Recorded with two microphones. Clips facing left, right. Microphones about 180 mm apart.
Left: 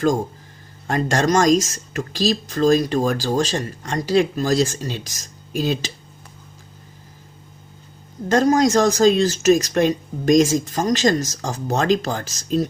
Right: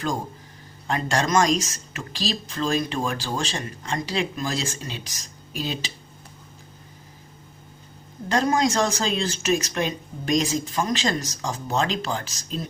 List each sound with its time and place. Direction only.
0.9 s speech: 40° left (ahead or behind)
8.3 s speech: 40° left (ahead or behind)